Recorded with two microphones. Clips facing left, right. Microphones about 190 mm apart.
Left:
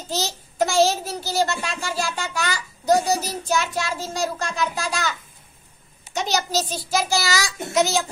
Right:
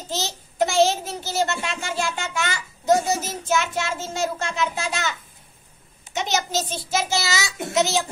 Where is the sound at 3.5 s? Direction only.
20° right (ahead or behind).